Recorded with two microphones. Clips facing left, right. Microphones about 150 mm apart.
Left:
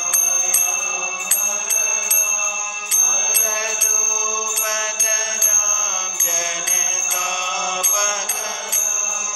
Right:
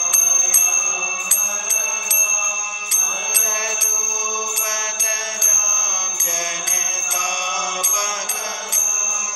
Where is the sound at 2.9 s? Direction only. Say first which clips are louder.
Even; 60° left (ahead or behind).